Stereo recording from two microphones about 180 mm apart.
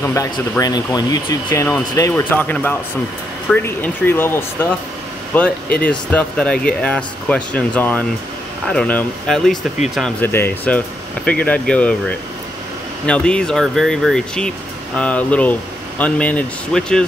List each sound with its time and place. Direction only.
0.0 s speech: 15° left (ahead or behind)
13.0 s speech: 5° left (ahead or behind)